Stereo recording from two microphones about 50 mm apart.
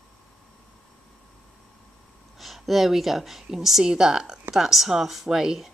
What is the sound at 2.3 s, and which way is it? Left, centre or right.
A woman's voice, centre.